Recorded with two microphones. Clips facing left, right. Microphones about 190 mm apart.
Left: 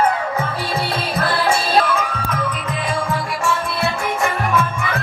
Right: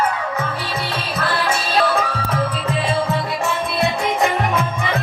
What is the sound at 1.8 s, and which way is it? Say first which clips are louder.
Music: right 2 dB; 35° right (ahead or behind).